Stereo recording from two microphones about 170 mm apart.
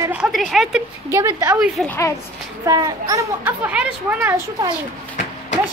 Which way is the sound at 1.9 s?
15° left (ahead or behind).